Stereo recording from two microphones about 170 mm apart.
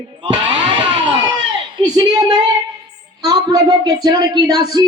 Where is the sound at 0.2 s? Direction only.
25° right (ahead or behind).